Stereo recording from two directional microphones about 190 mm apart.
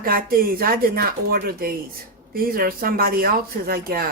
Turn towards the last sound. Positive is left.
turn(degrees=-50)  # may be behind; listen again after turning